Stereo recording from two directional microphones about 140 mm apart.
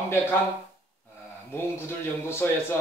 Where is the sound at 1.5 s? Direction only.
15° left (ahead or behind).